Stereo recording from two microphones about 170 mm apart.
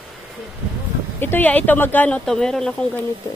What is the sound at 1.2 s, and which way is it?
Speech, 10° left (ahead or behind).